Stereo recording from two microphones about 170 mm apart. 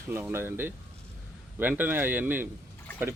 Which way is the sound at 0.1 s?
15° right (ahead or behind).